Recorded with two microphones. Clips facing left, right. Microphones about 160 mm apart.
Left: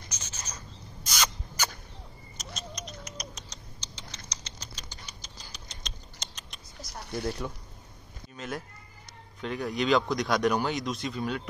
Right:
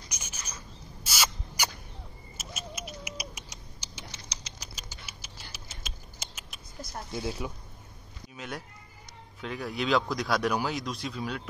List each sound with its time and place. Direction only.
0.1 s a sound: 10° right (ahead or behind)
1.0 s rodents: 5° right (ahead or behind)
2.3 s cat: 5° right (ahead or behind)
4.3 s typing: 10° right (ahead or behind)
7.0 s speech: 65° left (ahead or behind)
7.2 s speech: 5° right (ahead or behind)